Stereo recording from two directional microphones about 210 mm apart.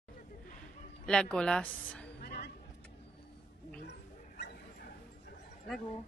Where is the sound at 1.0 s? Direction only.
5° left (ahead or behind).